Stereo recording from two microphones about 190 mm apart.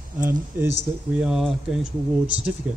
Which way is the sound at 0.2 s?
10° right (ahead or behind).